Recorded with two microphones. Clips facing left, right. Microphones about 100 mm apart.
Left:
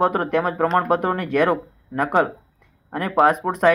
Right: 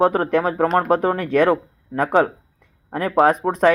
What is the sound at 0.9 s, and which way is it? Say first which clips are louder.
Speech: right 2 dB; 10° left (ahead or behind).